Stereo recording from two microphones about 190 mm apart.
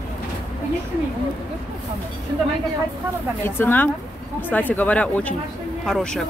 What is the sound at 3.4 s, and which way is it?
Speech, 10° left (ahead or behind).